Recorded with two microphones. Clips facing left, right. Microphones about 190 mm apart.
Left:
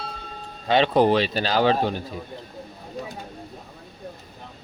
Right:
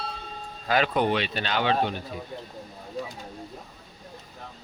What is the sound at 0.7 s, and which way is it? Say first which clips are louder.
Speech: left 6 dB; 30° left (ahead or behind).